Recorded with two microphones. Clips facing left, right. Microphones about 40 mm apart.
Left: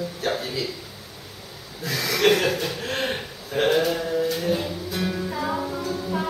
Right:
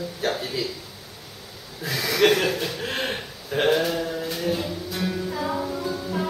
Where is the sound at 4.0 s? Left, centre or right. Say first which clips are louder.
Left 3 dB; centre.